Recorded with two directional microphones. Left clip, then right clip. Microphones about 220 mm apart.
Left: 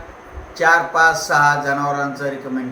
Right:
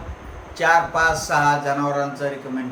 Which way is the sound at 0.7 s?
20° right (ahead or behind).